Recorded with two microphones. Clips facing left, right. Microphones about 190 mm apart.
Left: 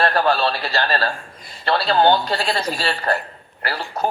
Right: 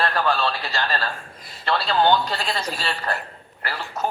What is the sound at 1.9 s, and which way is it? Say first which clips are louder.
A woman's voice: left 3 dB; 35° left (ahead or behind).